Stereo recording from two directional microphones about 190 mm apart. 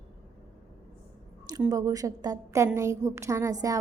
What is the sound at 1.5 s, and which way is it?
A woman's voice, 20° right (ahead or behind).